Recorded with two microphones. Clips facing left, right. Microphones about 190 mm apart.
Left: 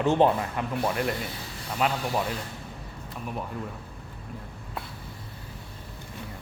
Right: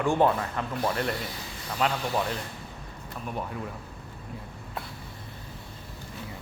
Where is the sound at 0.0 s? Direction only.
20° left (ahead or behind).